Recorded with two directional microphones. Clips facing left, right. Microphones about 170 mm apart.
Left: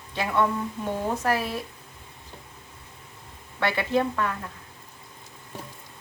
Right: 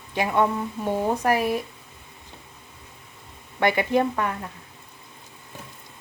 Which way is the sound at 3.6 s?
15° right (ahead or behind).